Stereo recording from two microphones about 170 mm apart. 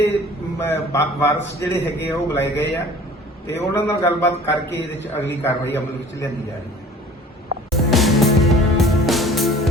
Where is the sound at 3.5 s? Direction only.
15° left (ahead or behind).